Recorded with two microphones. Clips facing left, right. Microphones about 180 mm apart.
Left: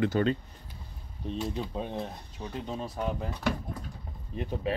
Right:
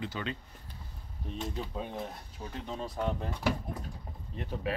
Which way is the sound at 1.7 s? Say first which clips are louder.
Left 3 dB; 25° left (ahead or behind).